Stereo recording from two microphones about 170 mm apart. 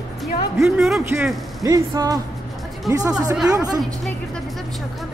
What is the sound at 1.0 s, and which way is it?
A man's voice, 15° right (ahead or behind).